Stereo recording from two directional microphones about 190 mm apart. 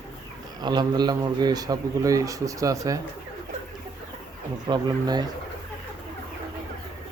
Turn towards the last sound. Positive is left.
turn(degrees=-20)  # may be behind; listen again after turning